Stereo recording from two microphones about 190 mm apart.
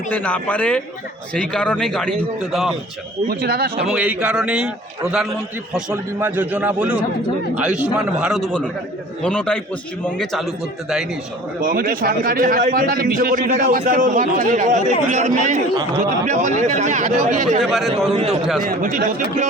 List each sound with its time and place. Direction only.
0.1 s a man's voice: 10° left (ahead or behind)
3.2 s a man's voice: 50° right (ahead or behind)
3.8 s a man's voice: 5° right (ahead or behind)
5.7 s a man's voice: 10° right (ahead or behind)
11.6 s a man's voice: 50° right (ahead or behind)
15.7 s speech: 25° right (ahead or behind)
16.2 s speech: 40° right (ahead or behind)
17.6 s a man's voice: centre (ahead or behind)
18.1 s speech: 30° right (ahead or behind)
18.7 s a man's voice: 45° right (ahead or behind)